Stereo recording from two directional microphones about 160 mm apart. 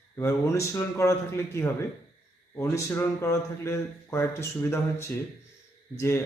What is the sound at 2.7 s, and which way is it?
Speech, 20° left (ahead or behind).